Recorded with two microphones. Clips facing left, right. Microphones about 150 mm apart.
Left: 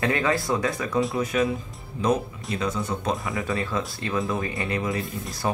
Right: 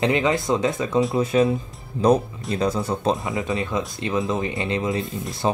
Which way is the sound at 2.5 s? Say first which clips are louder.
Right 4 dB; 35° right (ahead or behind).